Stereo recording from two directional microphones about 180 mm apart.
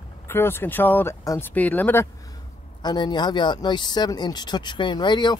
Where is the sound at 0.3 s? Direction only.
15° left (ahead or behind).